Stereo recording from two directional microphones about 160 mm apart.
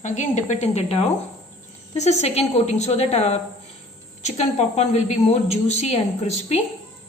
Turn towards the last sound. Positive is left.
turn(degrees=40)  # may be behind; listen again after turning